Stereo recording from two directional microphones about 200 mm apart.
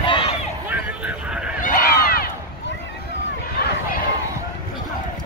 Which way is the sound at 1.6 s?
45° left (ahead or behind).